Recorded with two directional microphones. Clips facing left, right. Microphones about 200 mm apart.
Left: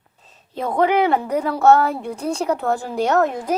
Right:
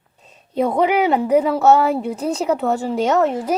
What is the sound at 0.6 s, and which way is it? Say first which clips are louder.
Speech: right 1 dB; 10° right (ahead or behind).